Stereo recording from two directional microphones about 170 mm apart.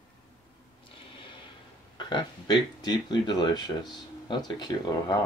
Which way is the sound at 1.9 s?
25° left (ahead or behind).